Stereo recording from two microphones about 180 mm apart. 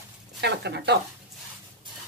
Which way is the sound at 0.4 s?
70° right (ahead or behind).